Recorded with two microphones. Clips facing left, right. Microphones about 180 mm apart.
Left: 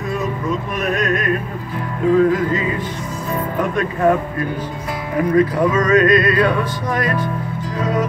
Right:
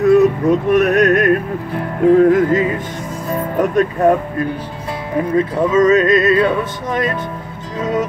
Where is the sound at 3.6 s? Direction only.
40° right (ahead or behind).